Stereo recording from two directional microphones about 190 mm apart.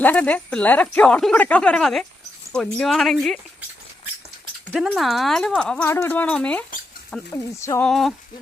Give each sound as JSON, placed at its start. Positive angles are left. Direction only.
{"t": 0.0, "sound": "speech", "side_deg": 10}
{"t": 4.7, "sound": "speech", "side_deg": 0}
{"t": 7.6, "sound": "speech", "side_deg": 15}
{"t": 7.9, "sound": "speech", "side_deg": 0}